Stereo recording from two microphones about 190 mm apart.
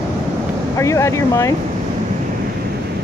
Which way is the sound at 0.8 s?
15° left (ahead or behind).